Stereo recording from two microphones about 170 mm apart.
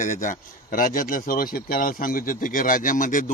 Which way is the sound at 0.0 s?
50° left (ahead or behind).